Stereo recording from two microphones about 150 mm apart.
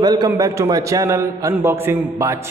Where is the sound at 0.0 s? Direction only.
25° right (ahead or behind).